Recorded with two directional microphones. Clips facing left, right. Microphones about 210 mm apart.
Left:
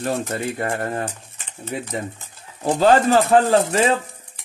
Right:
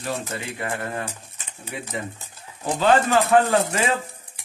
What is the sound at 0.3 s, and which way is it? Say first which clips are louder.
Speech: left 5 dB; 40° left (ahead or behind).